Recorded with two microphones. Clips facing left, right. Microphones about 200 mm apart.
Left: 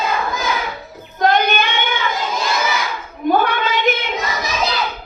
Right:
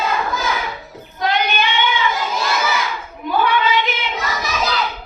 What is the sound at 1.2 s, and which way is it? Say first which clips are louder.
Child singing: left 4 dB; 50° left (ahead or behind).